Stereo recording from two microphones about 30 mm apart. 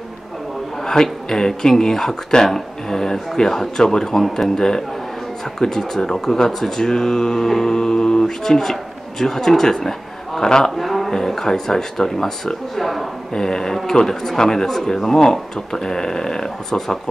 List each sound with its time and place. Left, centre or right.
0.8 s speech: centre
4.6 s mantra: centre
9.2 s speech: centre
10.8 s a sound: centre
11.1 s speech: centre
13.3 s mantra: left
14.0 s speech: centre